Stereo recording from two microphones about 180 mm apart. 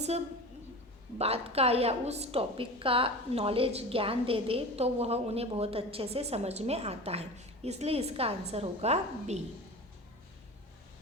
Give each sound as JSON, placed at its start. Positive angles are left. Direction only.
{"t": 1.2, "sound": "a woman's voice", "side_deg": -35}